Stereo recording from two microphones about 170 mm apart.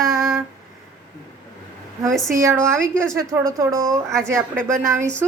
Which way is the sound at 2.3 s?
15° right (ahead or behind).